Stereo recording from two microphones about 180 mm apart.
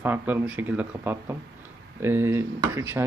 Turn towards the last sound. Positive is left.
turn(degrees=-15)  # may be behind; listen again after turning